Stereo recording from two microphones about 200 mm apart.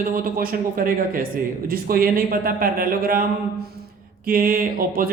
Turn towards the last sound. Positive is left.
turn(degrees=-45)  # may be behind; listen again after turning